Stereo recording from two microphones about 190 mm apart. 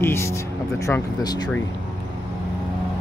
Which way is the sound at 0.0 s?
15° left (ahead or behind).